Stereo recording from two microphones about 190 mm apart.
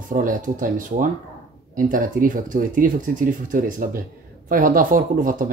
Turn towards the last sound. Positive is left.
turn(degrees=-45)  # may be behind; listen again after turning